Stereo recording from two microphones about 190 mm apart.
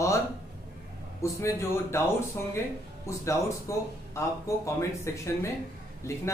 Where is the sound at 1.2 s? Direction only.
15° left (ahead or behind).